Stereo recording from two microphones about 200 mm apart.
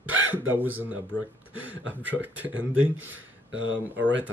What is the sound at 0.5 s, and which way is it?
Speech, 10° right (ahead or behind).